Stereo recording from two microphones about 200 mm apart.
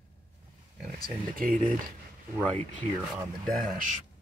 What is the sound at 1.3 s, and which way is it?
Speech, 45° right (ahead or behind).